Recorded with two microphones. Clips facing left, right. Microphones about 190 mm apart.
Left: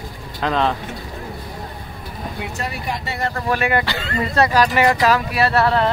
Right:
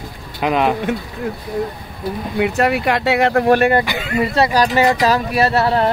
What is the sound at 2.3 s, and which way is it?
Speech, 65° right (ahead or behind).